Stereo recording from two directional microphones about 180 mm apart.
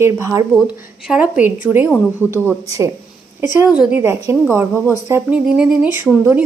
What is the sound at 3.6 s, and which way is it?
A woman's voice, 5° right (ahead or behind).